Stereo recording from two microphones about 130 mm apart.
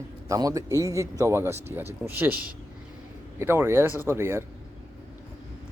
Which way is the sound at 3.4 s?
20° right (ahead or behind).